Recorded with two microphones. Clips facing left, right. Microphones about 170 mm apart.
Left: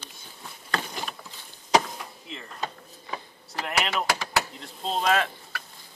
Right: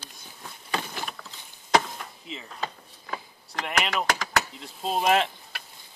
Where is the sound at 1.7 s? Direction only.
5° left (ahead or behind).